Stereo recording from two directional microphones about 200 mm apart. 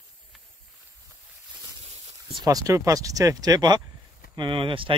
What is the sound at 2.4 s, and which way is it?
Speech, 15° right (ahead or behind).